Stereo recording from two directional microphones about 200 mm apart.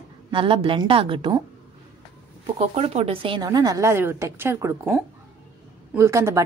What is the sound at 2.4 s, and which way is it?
A woman's voice, 30° right (ahead or behind).